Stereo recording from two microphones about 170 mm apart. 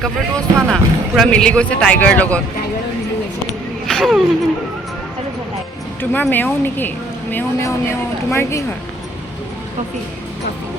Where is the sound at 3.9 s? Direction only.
5° left (ahead or behind).